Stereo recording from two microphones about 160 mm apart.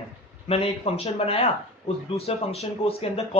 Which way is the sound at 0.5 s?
40° left (ahead or behind).